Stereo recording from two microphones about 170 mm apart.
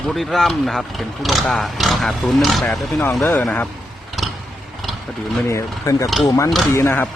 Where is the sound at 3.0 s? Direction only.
10° left (ahead or behind).